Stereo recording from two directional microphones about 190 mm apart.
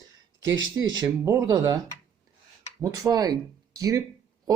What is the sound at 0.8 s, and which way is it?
Speech, 20° right (ahead or behind).